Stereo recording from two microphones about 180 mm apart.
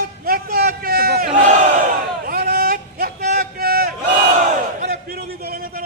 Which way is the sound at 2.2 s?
55° right (ahead or behind).